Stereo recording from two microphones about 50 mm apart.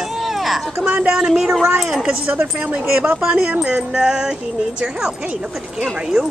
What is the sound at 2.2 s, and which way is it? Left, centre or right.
Speech, right.